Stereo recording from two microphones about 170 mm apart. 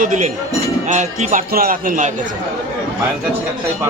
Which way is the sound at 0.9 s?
45° right (ahead or behind).